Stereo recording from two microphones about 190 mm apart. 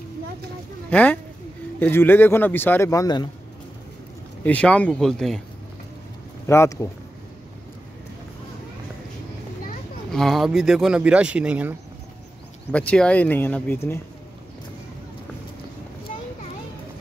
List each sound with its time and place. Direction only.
0.8 s speech: 5° left (ahead or behind)
4.5 s speech: 5° left (ahead or behind)
6.4 s speech: 15° left (ahead or behind)
10.1 s speech: centre (ahead or behind)
12.7 s speech: 5° left (ahead or behind)